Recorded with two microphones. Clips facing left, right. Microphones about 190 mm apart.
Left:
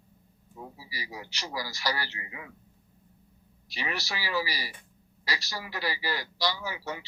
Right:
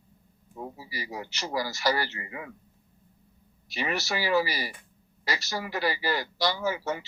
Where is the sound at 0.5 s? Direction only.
50° right (ahead or behind).